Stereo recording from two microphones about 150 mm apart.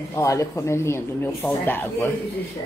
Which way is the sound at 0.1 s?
20° left (ahead or behind).